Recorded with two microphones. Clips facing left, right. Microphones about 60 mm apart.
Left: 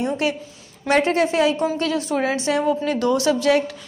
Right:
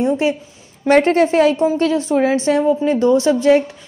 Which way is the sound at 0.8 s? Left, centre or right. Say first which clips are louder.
Right 6 dB; right.